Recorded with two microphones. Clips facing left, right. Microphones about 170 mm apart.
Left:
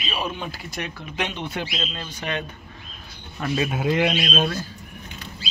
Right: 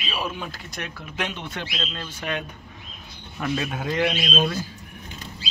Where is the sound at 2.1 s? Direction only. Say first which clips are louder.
Even; 5° right (ahead or behind).